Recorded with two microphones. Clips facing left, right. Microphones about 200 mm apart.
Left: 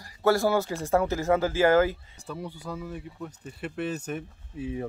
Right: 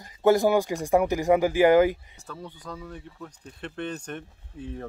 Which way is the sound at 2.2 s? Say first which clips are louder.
Left 3 dB; 10° left (ahead or behind).